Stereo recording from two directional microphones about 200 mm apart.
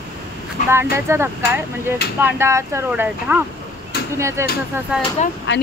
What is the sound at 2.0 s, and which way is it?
Speech, 50° left (ahead or behind).